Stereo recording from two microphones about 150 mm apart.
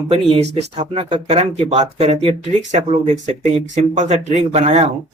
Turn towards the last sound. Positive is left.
turn(degrees=-45)  # may be behind; listen again after turning